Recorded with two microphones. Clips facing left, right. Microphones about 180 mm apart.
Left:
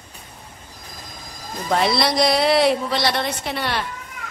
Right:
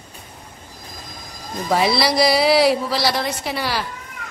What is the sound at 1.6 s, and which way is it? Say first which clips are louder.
A woman's voice: right 1 dB; centre (ahead or behind).